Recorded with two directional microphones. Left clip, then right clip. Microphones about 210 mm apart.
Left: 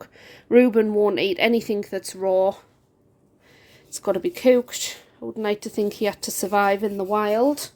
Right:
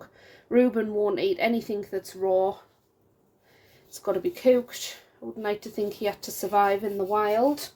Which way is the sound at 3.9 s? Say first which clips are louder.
Left 4 dB; 40° left (ahead or behind).